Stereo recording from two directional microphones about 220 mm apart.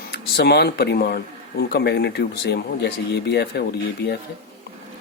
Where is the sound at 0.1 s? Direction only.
45° left (ahead or behind).